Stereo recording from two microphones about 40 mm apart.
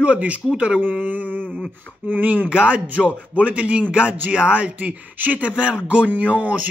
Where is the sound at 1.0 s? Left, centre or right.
Right.